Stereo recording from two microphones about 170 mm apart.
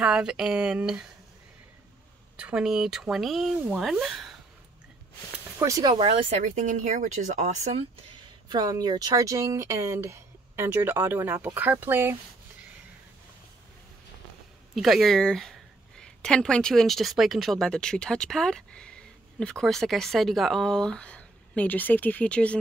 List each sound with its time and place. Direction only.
0.0 s speech: 5° right (ahead or behind)
2.3 s speech: 5° right (ahead or behind)
5.6 s speech: 20° right (ahead or behind); by 7.8 s 40° right (ahead or behind)
8.5 s speech: 25° right (ahead or behind)
14.8 s speech: centre (ahead or behind)